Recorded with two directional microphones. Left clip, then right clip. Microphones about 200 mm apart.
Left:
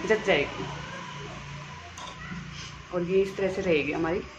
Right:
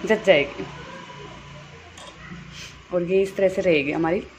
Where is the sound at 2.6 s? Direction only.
35° right (ahead or behind).